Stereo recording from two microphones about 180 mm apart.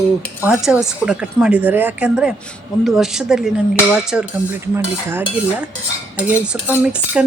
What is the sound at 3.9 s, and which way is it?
Cutlery, 5° right (ahead or behind).